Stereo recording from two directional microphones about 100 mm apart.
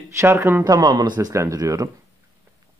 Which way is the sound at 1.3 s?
30° right (ahead or behind).